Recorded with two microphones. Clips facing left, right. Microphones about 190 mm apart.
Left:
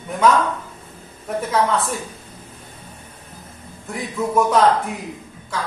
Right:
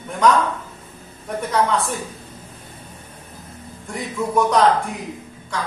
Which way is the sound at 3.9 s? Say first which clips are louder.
Left 1 dB; 5° left (ahead or behind).